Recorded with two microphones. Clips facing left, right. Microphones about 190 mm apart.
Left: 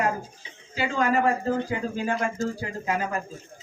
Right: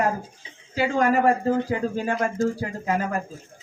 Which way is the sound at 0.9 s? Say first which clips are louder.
Right 3 dB; 50° right (ahead or behind).